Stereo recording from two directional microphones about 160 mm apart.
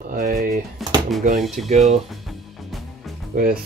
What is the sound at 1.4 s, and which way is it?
Speech, centre (ahead or behind).